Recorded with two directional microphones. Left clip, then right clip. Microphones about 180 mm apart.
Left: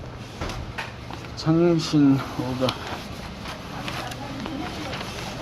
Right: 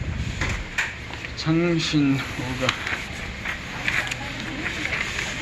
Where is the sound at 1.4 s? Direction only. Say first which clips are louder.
Left 2 dB; 20° left (ahead or behind).